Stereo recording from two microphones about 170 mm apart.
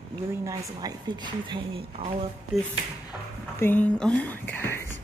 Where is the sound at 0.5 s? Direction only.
25° right (ahead or behind).